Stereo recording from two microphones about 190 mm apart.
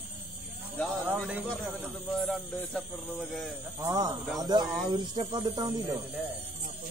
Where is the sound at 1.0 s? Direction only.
10° right (ahead or behind).